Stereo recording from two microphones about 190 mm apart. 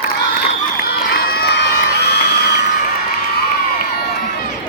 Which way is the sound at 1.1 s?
55° left (ahead or behind).